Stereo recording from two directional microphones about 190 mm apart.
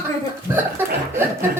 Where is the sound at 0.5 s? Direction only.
10° right (ahead or behind).